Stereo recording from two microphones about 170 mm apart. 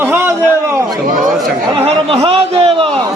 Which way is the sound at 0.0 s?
10° right (ahead or behind).